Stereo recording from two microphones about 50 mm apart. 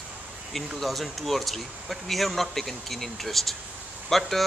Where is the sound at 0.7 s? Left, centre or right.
Centre.